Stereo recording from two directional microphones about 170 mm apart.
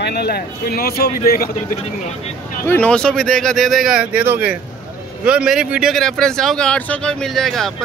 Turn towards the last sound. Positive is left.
turn(degrees=0)  # may be behind; listen again after turning